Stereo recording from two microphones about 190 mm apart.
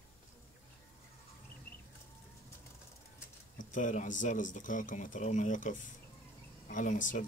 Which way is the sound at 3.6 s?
40° left (ahead or behind).